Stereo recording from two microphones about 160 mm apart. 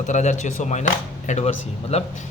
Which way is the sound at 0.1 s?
45° left (ahead or behind).